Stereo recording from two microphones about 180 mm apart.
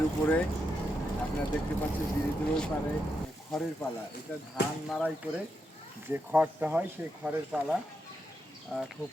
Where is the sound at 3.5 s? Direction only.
Centre (ahead or behind).